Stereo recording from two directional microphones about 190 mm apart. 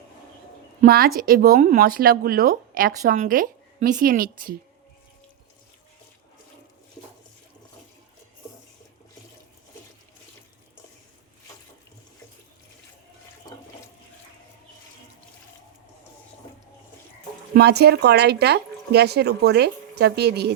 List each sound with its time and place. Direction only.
0.9 s speech: 50° right (ahead or behind)
17.5 s speech: 60° right (ahead or behind)